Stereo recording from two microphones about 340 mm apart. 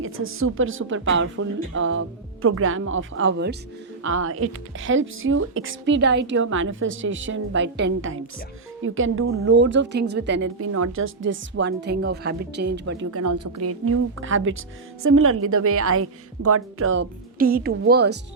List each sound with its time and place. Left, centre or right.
0.0 s speech: right